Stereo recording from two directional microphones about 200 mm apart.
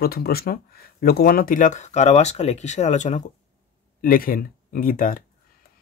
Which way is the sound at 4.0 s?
45° left (ahead or behind).